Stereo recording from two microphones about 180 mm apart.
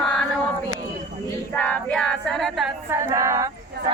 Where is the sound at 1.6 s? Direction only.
10° left (ahead or behind).